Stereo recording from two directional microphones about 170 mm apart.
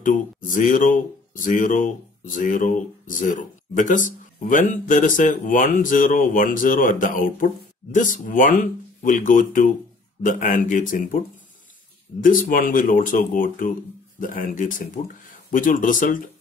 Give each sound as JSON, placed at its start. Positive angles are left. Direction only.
{"t": 0.0, "sound": "speech", "side_deg": 50}